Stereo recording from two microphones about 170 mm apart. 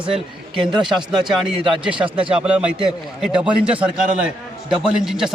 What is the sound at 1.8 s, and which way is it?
A man's voice, 5° right (ahead or behind).